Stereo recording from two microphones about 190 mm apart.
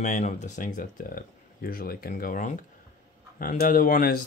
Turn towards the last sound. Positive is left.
turn(degrees=50)  # may be behind; listen again after turning